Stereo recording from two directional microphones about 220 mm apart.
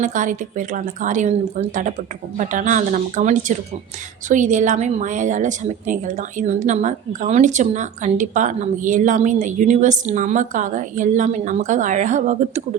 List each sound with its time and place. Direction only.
0.0 s a woman's voice: 35° right (ahead or behind)